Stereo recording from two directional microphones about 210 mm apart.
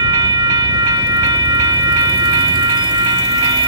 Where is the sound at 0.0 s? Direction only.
20° right (ahead or behind).